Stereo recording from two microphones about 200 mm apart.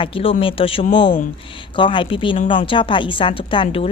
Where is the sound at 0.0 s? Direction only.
25° left (ahead or behind).